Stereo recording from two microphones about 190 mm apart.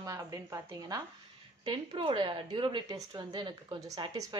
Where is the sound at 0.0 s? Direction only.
20° right (ahead or behind).